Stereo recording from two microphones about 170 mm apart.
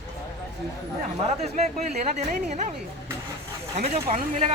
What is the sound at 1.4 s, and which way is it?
A woman's voice, 40° right (ahead or behind).